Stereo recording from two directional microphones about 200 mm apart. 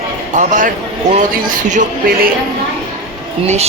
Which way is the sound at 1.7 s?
40° right (ahead or behind).